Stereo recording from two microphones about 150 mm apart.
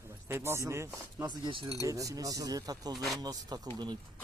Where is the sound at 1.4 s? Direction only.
35° right (ahead or behind).